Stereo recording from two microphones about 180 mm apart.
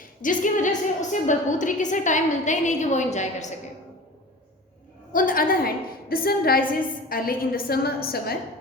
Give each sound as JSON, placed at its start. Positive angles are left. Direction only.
{"t": 0.2, "sound": "a woman's voice", "side_deg": 45}
{"t": 5.1, "sound": "a woman's voice", "side_deg": 50}